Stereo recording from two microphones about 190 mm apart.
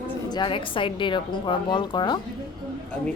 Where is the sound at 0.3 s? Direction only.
25° left (ahead or behind).